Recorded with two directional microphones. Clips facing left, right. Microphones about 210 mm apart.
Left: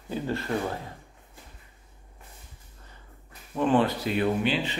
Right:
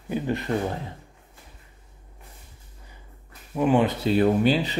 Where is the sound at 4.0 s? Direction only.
35° right (ahead or behind).